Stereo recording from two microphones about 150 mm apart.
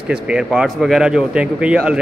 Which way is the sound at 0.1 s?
5° right (ahead or behind).